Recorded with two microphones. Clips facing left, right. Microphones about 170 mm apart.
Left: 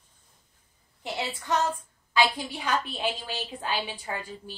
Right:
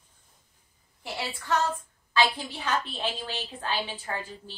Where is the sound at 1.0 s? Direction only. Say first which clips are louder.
Left 2 dB; 20° left (ahead or behind).